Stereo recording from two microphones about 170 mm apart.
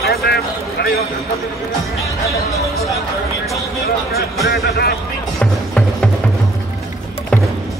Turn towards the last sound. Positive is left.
turn(degrees=0)  # may be behind; listen again after turning